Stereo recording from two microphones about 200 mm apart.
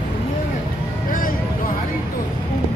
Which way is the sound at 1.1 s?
45° left (ahead or behind).